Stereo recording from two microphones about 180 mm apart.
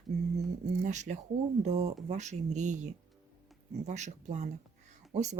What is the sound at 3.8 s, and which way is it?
A woman's voice, 40° right (ahead or behind).